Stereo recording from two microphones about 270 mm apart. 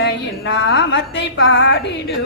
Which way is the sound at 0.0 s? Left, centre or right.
Left.